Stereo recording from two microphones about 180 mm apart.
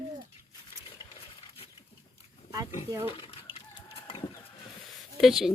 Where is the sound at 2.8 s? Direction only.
15° right (ahead or behind).